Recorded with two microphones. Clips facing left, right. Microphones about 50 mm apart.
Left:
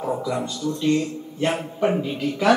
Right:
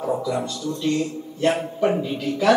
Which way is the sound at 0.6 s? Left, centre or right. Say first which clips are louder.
Left 2 dB; left.